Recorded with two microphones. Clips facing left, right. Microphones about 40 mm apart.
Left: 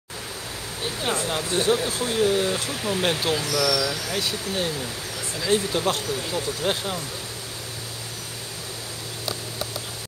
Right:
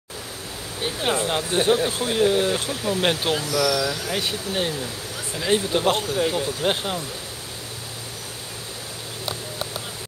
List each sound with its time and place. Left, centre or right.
0.8 s speech: right